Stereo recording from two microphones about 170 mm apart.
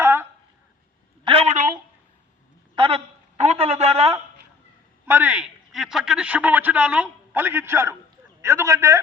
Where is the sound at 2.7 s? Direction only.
30° right (ahead or behind).